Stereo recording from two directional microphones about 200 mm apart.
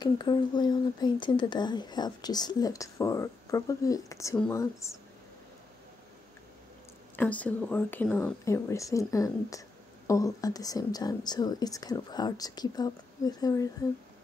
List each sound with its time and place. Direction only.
0.0 s speech: 20° left (ahead or behind)
7.2 s speech: 5° left (ahead or behind)